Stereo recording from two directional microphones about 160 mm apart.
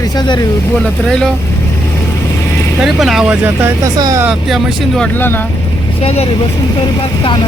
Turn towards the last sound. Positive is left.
turn(degrees=40)  # may be behind; listen again after turning